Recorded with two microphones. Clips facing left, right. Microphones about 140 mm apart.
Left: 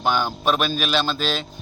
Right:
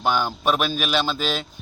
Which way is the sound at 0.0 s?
5° right (ahead or behind).